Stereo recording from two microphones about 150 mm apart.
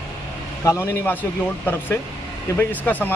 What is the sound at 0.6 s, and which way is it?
Speech, 15° left (ahead or behind).